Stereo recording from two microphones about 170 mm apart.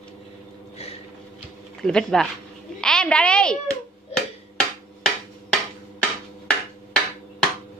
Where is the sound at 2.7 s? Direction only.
5° left (ahead or behind).